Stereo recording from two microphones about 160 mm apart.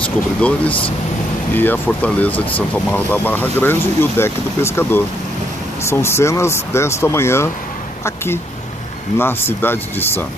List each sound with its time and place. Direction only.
0.0 s speech: 10° left (ahead or behind)
9.2 s speech: 15° left (ahead or behind)